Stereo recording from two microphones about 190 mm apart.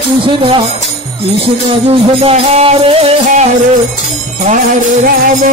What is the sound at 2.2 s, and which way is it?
Music, 30° right (ahead or behind).